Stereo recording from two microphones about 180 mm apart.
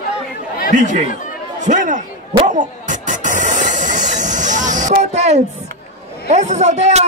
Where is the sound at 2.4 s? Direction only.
45° right (ahead or behind).